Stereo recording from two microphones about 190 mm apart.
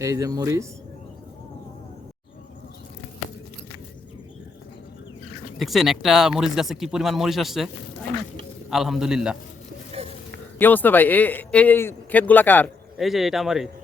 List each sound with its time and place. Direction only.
0.0 s speech: 15° right (ahead or behind)
5.5 s speech: centre (ahead or behind)
8.7 s speech: centre (ahead or behind)
10.6 s a man's voice: 10° left (ahead or behind)
13.0 s speech: centre (ahead or behind)